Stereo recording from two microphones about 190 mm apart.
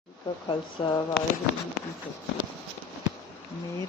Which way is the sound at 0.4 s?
25° left (ahead or behind).